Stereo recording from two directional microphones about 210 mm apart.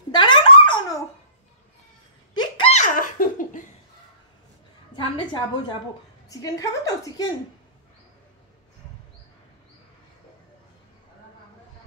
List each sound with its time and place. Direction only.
0.1 s a sound: 20° left (ahead or behind)
2.3 s laughter: 20° left (ahead or behind); by 3.6 s 40° left (ahead or behind)
4.9 s a woman's voice: 25° left (ahead or behind)